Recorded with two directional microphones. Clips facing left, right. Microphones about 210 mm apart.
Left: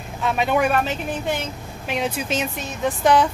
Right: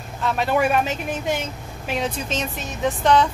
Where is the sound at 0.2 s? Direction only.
Centre (ahead or behind).